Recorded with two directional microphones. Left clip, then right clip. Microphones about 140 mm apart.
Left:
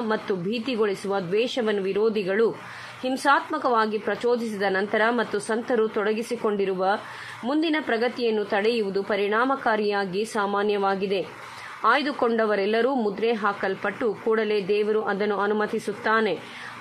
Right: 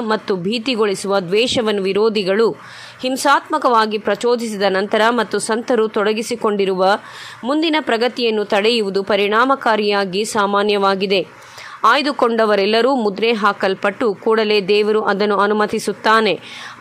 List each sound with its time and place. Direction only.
0.1 s speech: 35° right (ahead or behind)